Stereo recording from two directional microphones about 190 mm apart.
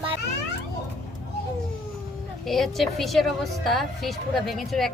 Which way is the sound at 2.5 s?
Centre (ahead or behind).